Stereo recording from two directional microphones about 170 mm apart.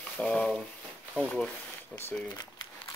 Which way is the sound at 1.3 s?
5° left (ahead or behind).